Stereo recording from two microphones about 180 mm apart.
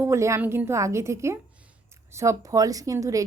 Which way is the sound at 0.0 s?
15° right (ahead or behind).